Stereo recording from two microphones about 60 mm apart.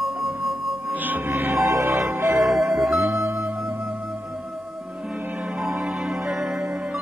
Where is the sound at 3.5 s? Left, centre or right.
Right.